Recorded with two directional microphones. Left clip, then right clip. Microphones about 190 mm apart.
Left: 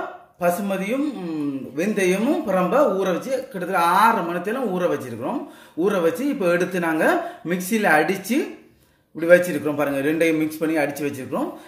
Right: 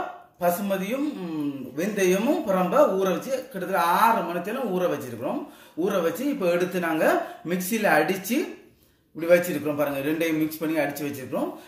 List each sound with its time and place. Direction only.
0.4 s speech: 30° left (ahead or behind)